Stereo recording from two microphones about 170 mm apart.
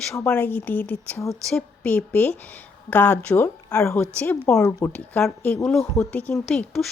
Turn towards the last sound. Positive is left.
turn(degrees=0)  # may be behind; listen again after turning